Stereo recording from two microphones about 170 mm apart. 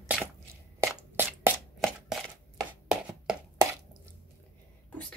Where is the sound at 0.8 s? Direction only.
10° right (ahead or behind).